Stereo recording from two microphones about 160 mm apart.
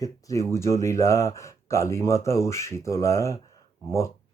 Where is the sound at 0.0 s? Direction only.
20° left (ahead or behind).